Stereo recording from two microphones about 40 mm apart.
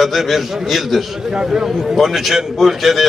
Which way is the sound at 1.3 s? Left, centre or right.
Centre.